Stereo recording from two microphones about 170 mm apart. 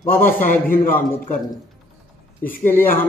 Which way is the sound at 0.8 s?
55° left (ahead or behind).